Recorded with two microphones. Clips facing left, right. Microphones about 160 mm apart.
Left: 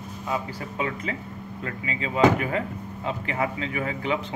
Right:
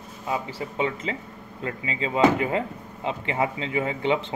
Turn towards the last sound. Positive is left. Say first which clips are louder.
# right 3 dB
turn(degrees=-25)  # may be behind; listen again after turning